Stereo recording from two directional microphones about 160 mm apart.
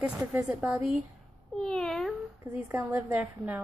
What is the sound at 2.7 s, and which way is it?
Speech, 15° right (ahead or behind).